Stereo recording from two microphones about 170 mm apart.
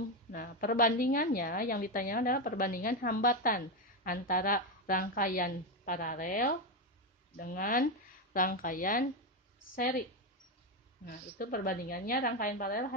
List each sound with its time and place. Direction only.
0.3 s a woman's voice: 60° left (ahead or behind)
11.1 s a woman's voice: 55° left (ahead or behind)